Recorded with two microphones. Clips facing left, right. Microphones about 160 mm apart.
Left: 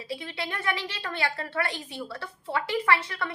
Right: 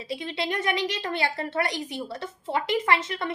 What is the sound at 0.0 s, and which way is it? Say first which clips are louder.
A woman's voice: right 4 dB; 20° right (ahead or behind).